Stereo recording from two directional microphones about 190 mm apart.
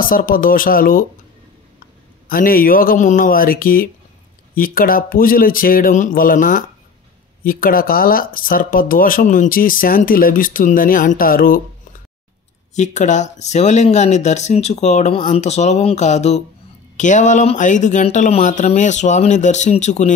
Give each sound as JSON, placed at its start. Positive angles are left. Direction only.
{"t": 0.0, "sound": "speech", "side_deg": 50}
{"t": 2.2, "sound": "speech", "side_deg": 50}
{"t": 12.7, "sound": "speech", "side_deg": 40}